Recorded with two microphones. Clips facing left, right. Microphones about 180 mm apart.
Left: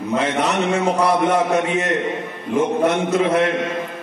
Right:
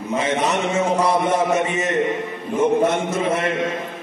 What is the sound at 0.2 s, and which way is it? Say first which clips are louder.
A man's voice: right 1 dB; 65° left (ahead or behind).